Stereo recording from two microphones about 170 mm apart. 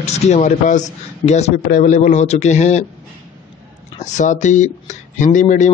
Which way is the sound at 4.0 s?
45° left (ahead or behind).